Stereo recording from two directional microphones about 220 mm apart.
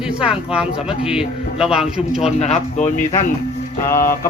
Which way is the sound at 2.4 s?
35° left (ahead or behind).